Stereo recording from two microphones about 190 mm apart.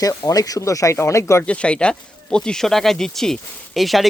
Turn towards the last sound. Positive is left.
turn(degrees=0)  # may be behind; listen again after turning